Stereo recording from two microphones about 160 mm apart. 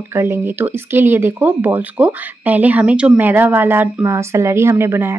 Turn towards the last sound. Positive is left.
turn(degrees=-15)  # may be behind; listen again after turning